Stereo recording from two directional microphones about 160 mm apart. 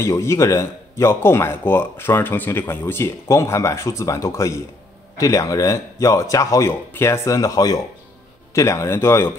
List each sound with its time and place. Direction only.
0.0 s a man's voice: 15° left (ahead or behind)